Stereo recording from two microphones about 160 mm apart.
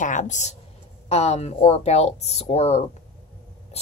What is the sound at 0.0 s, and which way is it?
A woman's voice, 50° left (ahead or behind).